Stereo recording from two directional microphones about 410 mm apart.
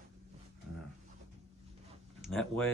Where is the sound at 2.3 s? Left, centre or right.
Centre.